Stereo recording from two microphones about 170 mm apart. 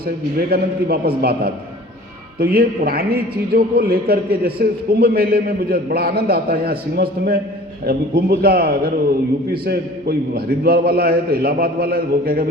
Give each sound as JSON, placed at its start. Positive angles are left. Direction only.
{"t": 0.3, "sound": "a man's voice", "side_deg": -65}